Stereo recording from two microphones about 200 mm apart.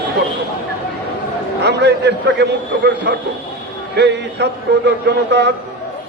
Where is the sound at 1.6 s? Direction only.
55° right (ahead or behind).